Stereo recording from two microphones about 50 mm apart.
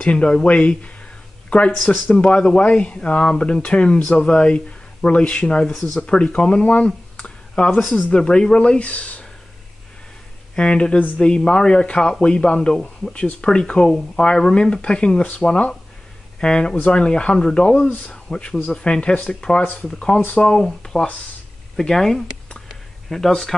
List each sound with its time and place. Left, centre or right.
0.0 s speech: left
2.1 s speech: centre
7.2 s a sound: centre
7.9 s speech: left
10.5 s speech: centre
19.6 s speech: left
19.9 s speech: centre